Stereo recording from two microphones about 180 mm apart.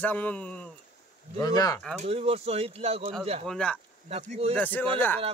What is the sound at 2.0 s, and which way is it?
Speech, 35° right (ahead or behind).